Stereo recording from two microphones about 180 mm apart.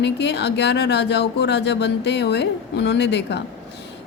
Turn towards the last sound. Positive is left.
turn(degrees=70)  # may be behind; listen again after turning